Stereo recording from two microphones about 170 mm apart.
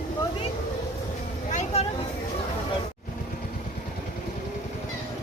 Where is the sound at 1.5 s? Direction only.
45° left (ahead or behind).